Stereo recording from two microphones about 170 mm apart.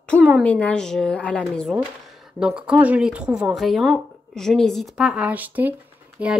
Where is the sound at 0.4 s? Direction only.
10° left (ahead or behind).